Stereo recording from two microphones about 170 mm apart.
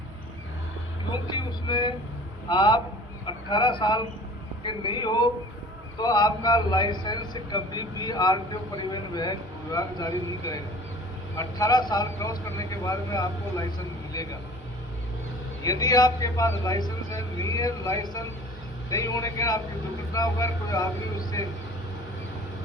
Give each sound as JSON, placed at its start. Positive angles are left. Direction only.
{"t": 1.1, "sound": "a man's voice", "side_deg": 25}
{"t": 15.6, "sound": "a man's voice", "side_deg": 20}